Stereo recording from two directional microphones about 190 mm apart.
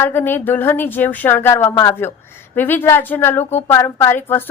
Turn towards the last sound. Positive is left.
turn(degrees=10)  # may be behind; listen again after turning